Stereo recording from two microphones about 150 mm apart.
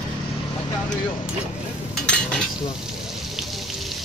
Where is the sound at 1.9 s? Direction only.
5° left (ahead or behind).